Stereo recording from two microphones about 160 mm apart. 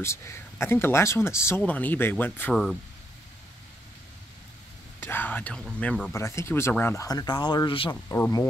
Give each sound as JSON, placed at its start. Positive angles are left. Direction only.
{"t": 0.0, "sound": "speech", "side_deg": 15}
{"t": 2.5, "sound": "speech", "side_deg": 0}
{"t": 5.0, "sound": "speech", "side_deg": 10}
{"t": 6.1, "sound": "speech", "side_deg": 15}
{"t": 7.9, "sound": "speech", "side_deg": 20}